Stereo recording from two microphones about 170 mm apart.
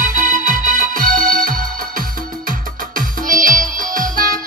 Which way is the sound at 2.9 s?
55° right (ahead or behind).